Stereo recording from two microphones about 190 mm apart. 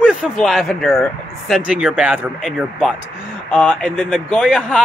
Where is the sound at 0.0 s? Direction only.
Centre (ahead or behind).